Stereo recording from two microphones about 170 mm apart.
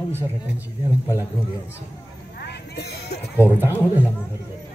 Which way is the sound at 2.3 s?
75° left (ahead or behind).